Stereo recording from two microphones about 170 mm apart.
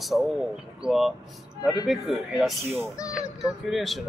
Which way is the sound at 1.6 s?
25° left (ahead or behind).